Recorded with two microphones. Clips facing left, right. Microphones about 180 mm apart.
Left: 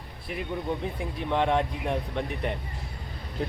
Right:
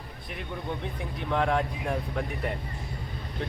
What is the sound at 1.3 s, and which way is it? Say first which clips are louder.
Speech: left 1 dB; centre (ahead or behind).